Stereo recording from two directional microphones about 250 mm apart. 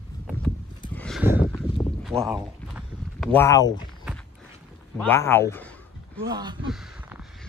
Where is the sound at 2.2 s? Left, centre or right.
Centre.